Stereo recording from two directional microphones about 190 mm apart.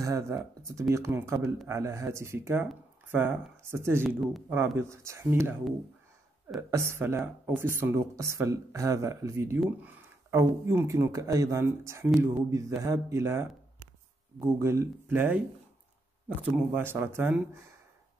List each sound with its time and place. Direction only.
0.0 s speech: 15° right (ahead or behind)
6.7 s speech: 15° right (ahead or behind)